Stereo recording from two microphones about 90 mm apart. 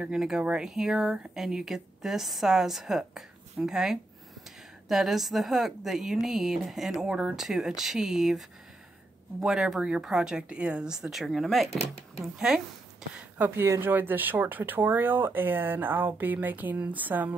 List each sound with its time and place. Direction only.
0.0 s speech: 5° right (ahead or behind)
13.6 s speech: 25° right (ahead or behind)